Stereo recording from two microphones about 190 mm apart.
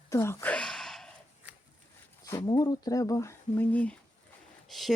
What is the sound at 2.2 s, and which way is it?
Speech, 20° left (ahead or behind).